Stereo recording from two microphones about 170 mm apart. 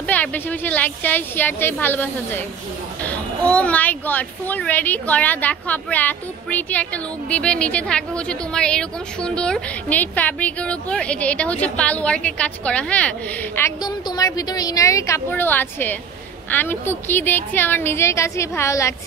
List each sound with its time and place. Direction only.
0.0 s a child's voice: 10° left (ahead or behind)
13.6 s a woman's voice: 20° left (ahead or behind)